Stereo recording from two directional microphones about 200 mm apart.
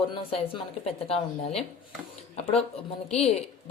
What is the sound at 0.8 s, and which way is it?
Speech, 30° left (ahead or behind).